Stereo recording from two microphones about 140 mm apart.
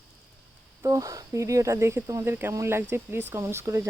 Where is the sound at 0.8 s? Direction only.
25° right (ahead or behind).